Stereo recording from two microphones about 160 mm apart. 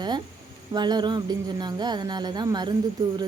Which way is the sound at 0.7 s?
25° right (ahead or behind).